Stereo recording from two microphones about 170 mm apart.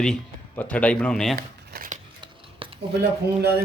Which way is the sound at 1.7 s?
45° right (ahead or behind).